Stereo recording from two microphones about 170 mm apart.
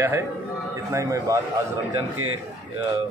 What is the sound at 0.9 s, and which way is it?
Speech, 20° right (ahead or behind).